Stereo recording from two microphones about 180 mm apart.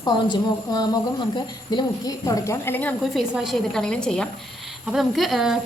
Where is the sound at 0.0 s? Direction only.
20° left (ahead or behind).